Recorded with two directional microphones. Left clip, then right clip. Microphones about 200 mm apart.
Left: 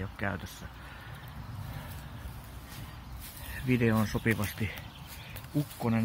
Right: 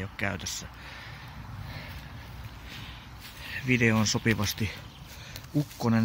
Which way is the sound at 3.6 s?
10° right (ahead or behind).